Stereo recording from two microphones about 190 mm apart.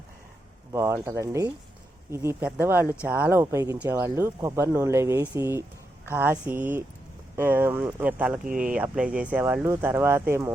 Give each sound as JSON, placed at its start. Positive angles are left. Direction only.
{"t": 0.7, "sound": "speech", "side_deg": -15}
{"t": 8.4, "sound": "speech", "side_deg": -45}
{"t": 8.7, "sound": "speech", "side_deg": -5}